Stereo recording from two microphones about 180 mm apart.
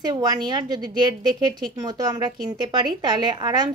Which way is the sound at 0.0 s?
25° right (ahead or behind).